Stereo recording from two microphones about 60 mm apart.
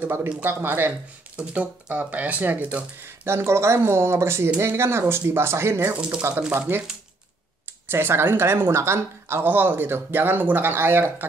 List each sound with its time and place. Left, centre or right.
0.0 s speech: right
1.3 s speech: right
3.0 s speech: right
7.9 s speech: right
9.4 s speech: right